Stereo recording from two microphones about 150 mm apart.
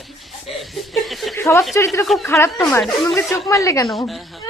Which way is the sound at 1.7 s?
20° left (ahead or behind).